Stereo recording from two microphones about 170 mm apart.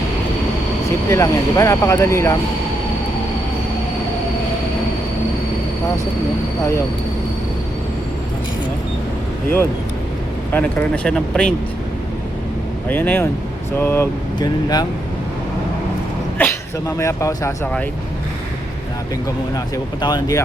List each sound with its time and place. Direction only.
1.1 s speech: 15° left (ahead or behind)
10.5 s speech: 10° left (ahead or behind)
12.9 s speech: 10° left (ahead or behind)
14.3 s speech: 25° left (ahead or behind)
17.0 s speech: 15° left (ahead or behind)
19.7 s speech: 25° left (ahead or behind)